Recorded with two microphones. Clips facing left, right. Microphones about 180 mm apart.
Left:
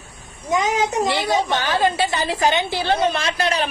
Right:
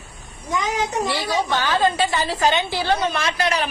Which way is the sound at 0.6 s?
20° left (ahead or behind).